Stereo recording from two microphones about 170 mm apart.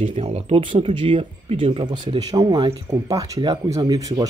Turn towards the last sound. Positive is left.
turn(degrees=-20)  # may be behind; listen again after turning